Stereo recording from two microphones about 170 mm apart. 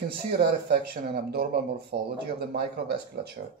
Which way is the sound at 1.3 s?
70° right (ahead or behind).